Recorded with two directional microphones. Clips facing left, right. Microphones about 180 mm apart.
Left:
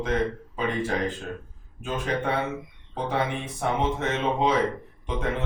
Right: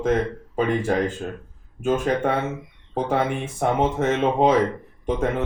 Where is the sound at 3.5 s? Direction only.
50° right (ahead or behind).